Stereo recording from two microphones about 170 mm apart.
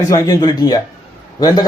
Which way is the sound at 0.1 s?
20° left (ahead or behind).